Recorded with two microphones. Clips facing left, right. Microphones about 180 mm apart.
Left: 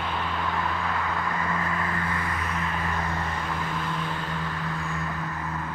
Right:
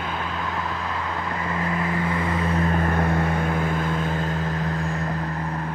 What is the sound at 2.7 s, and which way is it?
Vehicle, 55° right (ahead or behind).